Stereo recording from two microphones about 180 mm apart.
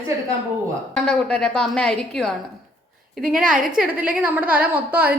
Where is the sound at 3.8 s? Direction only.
10° right (ahead or behind).